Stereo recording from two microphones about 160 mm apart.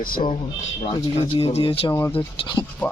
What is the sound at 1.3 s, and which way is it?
Speech, 35° left (ahead or behind).